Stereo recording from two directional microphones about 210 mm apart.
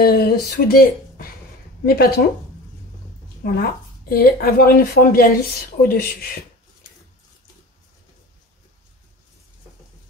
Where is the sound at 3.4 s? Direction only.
45° left (ahead or behind).